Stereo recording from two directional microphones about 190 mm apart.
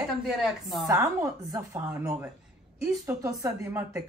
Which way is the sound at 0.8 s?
15° right (ahead or behind).